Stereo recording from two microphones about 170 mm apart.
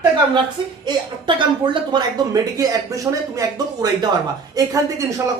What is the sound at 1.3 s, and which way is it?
Speech, 25° right (ahead or behind).